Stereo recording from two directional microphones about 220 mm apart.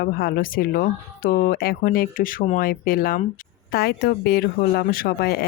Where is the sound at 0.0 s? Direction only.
45° left (ahead or behind).